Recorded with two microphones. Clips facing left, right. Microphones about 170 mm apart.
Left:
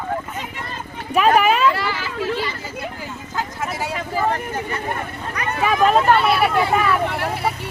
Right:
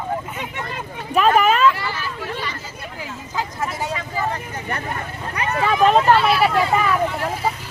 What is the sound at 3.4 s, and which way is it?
Speech, centre (ahead or behind).